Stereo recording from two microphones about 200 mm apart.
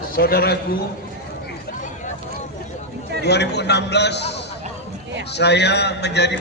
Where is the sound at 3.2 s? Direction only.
55° left (ahead or behind).